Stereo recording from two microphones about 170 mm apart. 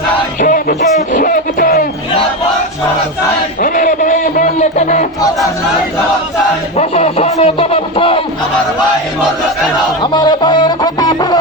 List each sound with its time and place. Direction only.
0.3 s music: 50° left (ahead or behind)
3.6 s music: 50° left (ahead or behind)
6.7 s speech: 35° left (ahead or behind)
10.0 s speech: 25° left (ahead or behind)